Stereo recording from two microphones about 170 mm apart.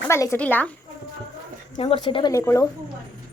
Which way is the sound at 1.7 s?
35° left (ahead or behind).